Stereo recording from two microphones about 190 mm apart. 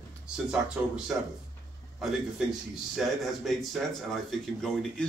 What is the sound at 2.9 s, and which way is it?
Speech, centre (ahead or behind).